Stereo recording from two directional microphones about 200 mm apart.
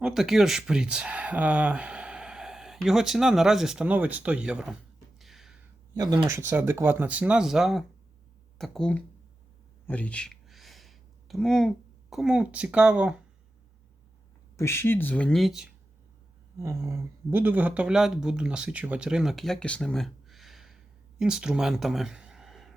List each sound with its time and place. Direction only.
0.0 s speech: centre (ahead or behind)
5.2 s a sound: centre (ahead or behind)
5.9 s speech: 20° right (ahead or behind); by 9.0 s 5° left (ahead or behind)
9.8 s a sound: 5° left (ahead or behind)
12.1 s speech: 5° right (ahead or behind)
14.5 s speech: 15° left (ahead or behind); by 15.7 s centre (ahead or behind)
16.6 s speech: 15° right (ahead or behind); by 22.7 s centre (ahead or behind)